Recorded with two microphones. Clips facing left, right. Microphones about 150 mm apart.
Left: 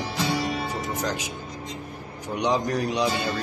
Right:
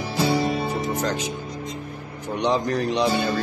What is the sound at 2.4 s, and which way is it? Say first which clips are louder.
Speech: right 2 dB; 10° left (ahead or behind).